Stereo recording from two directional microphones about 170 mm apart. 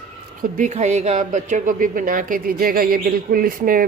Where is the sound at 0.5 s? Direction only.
45° right (ahead or behind).